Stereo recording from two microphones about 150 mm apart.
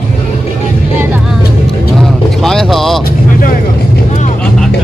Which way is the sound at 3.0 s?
70° left (ahead or behind).